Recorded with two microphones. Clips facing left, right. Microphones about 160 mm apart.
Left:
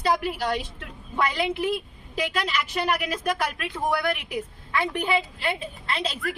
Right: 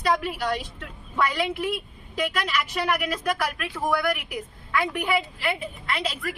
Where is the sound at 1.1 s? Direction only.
25° left (ahead or behind).